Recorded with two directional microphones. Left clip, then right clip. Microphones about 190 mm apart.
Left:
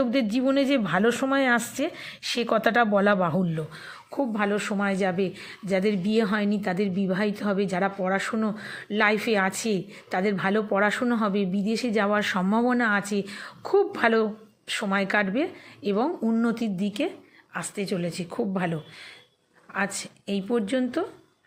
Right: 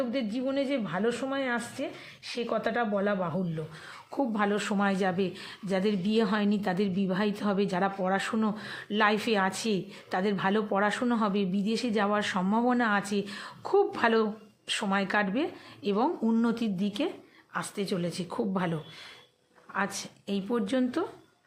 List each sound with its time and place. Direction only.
0.0 s speech: 30° left (ahead or behind)
3.8 s a woman's voice: 5° left (ahead or behind)